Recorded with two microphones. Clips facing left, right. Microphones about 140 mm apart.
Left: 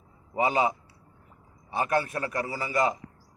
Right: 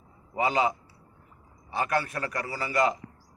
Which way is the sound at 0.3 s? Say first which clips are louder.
Left 1 dB; 20° left (ahead or behind).